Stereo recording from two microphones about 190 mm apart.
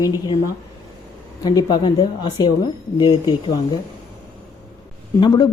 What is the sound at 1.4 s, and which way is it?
Speech, 20° left (ahead or behind).